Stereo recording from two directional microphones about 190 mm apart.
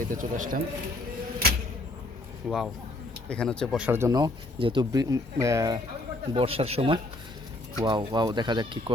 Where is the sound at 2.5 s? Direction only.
Centre (ahead or behind).